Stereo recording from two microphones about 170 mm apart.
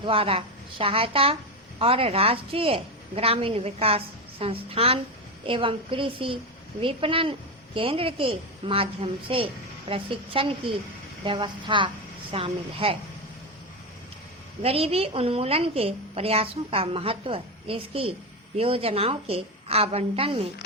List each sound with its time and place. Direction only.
0.0 s a woman's voice: 30° right (ahead or behind)
14.6 s a woman's voice: 35° right (ahead or behind)